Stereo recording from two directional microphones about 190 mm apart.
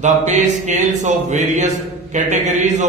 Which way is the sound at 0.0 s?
40° right (ahead or behind).